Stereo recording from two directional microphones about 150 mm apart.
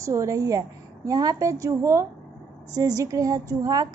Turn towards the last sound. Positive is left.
turn(degrees=-25)  # may be behind; listen again after turning